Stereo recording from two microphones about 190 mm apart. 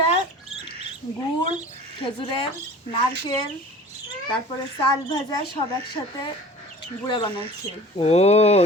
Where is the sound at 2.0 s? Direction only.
25° left (ahead or behind).